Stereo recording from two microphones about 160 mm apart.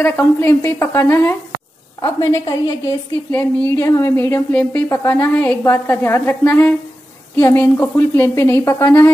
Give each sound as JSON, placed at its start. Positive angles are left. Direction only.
{"t": 0.0, "sound": "a woman's voice", "side_deg": 15}